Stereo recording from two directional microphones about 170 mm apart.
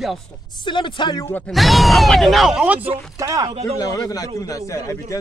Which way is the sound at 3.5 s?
35° right (ahead or behind).